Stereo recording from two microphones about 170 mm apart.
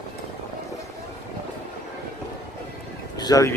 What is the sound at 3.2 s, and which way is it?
Speech, 20° left (ahead or behind).